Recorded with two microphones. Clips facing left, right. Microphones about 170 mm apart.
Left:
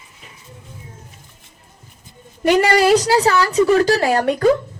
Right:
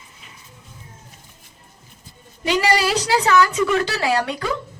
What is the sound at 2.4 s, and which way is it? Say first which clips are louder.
A woman's voice: left 6 dB; 50° left (ahead or behind).